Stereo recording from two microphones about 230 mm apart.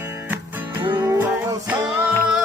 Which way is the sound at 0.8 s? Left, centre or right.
Centre.